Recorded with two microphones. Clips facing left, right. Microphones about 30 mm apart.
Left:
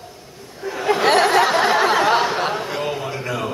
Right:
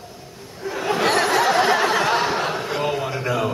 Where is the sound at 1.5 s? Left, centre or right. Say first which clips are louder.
Left 1 dB; centre.